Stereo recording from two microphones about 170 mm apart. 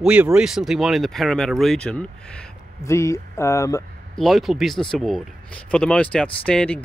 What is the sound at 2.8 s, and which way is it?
Speech, 15° left (ahead or behind).